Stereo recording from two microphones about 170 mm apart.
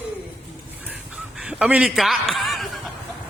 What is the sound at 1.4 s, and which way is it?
Speech, 5° right (ahead or behind).